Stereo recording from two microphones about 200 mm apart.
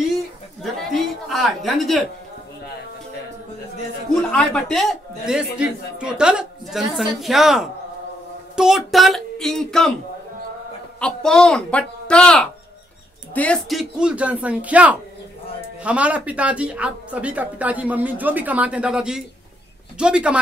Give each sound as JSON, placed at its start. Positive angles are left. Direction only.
{"t": 0.1, "sound": "a sound", "side_deg": 0}
{"t": 4.3, "sound": "a man's voice", "side_deg": 5}
{"t": 11.0, "sound": "a man's voice", "side_deg": 5}